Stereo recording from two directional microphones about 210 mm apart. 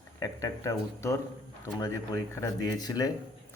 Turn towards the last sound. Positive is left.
turn(degrees=15)  # may be behind; listen again after turning